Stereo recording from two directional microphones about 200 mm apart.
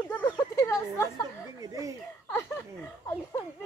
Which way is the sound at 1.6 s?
15° right (ahead or behind).